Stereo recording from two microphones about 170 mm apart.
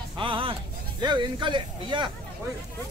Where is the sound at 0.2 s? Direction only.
30° right (ahead or behind).